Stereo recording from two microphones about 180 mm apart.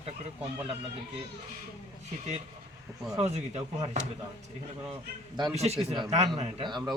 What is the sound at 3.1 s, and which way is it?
Speech, 35° right (ahead or behind).